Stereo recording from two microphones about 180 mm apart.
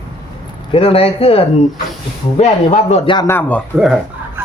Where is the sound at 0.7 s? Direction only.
35° left (ahead or behind).